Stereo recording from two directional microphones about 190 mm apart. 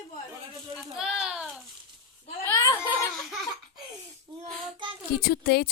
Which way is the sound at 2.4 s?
20° left (ahead or behind).